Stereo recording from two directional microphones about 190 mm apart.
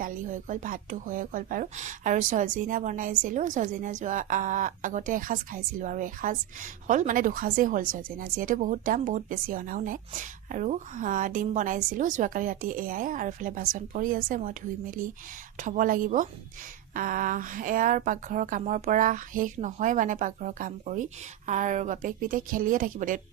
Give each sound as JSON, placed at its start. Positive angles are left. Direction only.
{"t": 0.0, "sound": "a woman's voice", "side_deg": -45}